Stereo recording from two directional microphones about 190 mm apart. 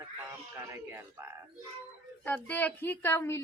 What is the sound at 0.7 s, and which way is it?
Speech, 15° right (ahead or behind).